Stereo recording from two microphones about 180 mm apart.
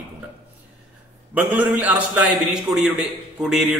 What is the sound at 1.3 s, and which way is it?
A man's voice, 10° right (ahead or behind).